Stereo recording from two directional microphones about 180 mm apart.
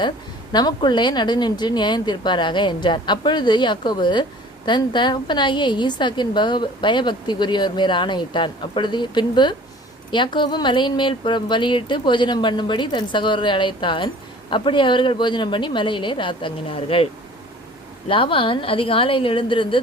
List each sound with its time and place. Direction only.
0.5 s a woman's voice: 25° left (ahead or behind)
18.1 s a woman's voice: 30° left (ahead or behind)